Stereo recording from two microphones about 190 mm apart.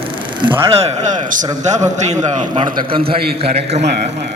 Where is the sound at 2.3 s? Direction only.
30° right (ahead or behind).